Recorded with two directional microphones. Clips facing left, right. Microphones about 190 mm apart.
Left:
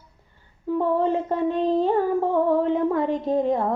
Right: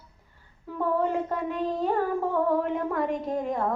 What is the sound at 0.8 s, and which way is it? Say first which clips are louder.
Music: left 3 dB; 30° left (ahead or behind).